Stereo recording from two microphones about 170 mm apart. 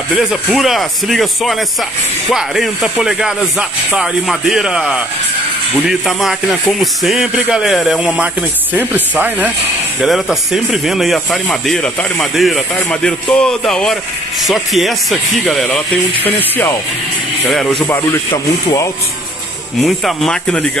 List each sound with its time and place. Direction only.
0.2 s speech: 5° right (ahead or behind)
18.3 s speech: 25° left (ahead or behind)
19.8 s speech: centre (ahead or behind)